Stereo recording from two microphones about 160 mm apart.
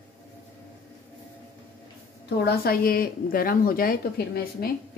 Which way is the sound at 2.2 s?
90° left.